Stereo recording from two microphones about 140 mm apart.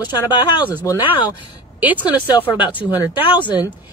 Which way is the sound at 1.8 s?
10° right (ahead or behind).